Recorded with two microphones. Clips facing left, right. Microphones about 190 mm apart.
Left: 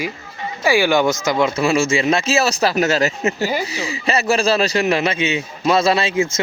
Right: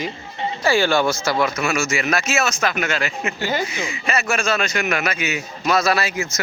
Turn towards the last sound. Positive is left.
turn(degrees=25)  # may be behind; listen again after turning